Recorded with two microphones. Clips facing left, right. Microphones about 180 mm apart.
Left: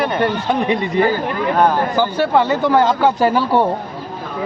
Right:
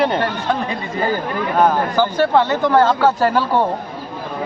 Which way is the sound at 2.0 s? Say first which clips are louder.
Right 1 dB; 10° left (ahead or behind).